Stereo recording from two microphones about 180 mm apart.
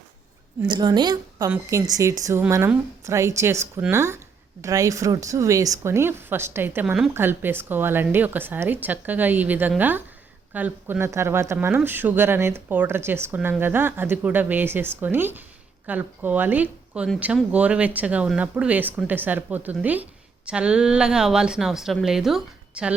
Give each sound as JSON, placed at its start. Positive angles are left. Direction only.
{"t": 0.7, "sound": "a woman's voice", "side_deg": -25}